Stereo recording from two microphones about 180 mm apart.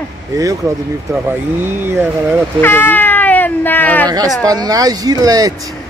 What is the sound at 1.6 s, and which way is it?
Speech, 10° right (ahead or behind).